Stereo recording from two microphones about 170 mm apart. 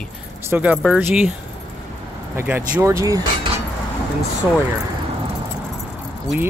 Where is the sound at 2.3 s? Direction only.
10° right (ahead or behind).